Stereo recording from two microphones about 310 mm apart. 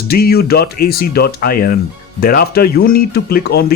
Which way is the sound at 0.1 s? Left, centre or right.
Left.